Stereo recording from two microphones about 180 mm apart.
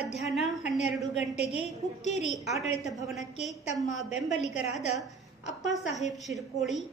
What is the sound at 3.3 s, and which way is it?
A woman's voice, 40° left (ahead or behind).